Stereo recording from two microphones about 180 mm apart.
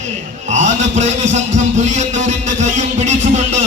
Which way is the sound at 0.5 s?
40° right (ahead or behind).